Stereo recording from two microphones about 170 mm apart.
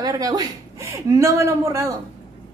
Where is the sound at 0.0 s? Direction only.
20° right (ahead or behind).